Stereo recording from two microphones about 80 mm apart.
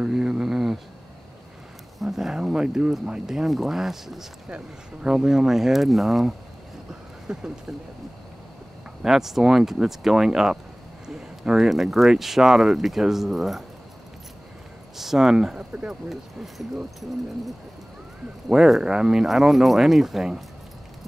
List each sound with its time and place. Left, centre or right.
0.0 s a sound: centre
2.0 s speech: centre
6.9 s a sound: centre
9.0 s speech: centre
15.0 s speech: centre
16.1 s speech: centre
18.5 s speech: centre